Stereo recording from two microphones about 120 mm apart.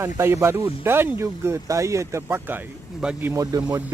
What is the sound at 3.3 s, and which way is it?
Speech, 25° right (ahead or behind).